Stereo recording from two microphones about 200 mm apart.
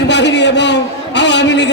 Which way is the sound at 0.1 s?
60° left (ahead or behind).